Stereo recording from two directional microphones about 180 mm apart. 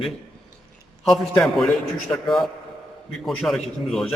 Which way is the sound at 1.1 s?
Centre (ahead or behind).